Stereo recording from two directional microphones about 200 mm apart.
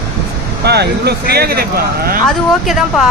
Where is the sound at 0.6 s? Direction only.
55° right (ahead or behind).